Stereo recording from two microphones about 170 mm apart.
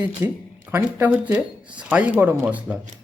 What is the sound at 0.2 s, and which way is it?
Speech, 10° right (ahead or behind).